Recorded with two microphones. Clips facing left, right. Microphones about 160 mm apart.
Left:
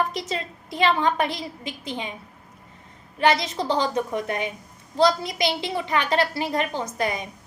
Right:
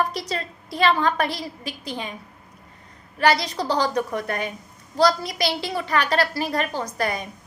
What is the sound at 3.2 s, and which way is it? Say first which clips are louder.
A woman's voice: right 1 dB; 20° left (ahead or behind).